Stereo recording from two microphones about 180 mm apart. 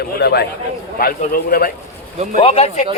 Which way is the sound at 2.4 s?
35° left (ahead or behind).